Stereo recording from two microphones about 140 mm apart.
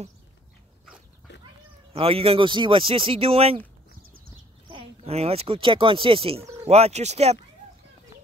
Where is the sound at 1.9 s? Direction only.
45° right (ahead or behind).